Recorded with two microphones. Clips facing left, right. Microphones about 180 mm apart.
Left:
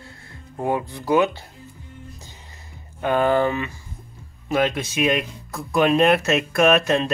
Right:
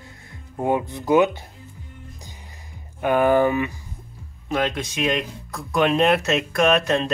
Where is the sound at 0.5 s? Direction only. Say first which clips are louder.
Right 2 dB; 20° right (ahead or behind).